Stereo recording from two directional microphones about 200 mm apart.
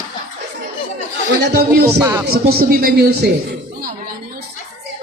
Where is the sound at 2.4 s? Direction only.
50° right (ahead or behind).